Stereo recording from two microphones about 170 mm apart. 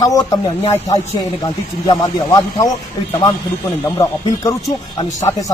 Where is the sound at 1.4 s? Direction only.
25° left (ahead or behind).